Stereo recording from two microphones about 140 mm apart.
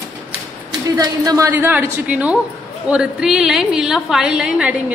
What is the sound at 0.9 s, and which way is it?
Speech, 25° right (ahead or behind).